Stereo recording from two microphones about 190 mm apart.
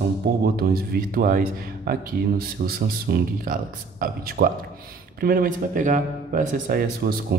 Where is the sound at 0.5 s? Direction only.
50° right (ahead or behind).